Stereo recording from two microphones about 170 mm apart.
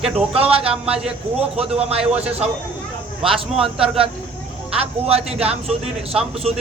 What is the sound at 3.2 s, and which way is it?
Speech, 30° right (ahead or behind).